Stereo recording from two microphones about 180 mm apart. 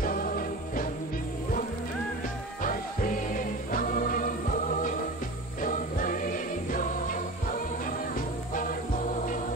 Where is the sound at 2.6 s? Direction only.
50° left (ahead or behind).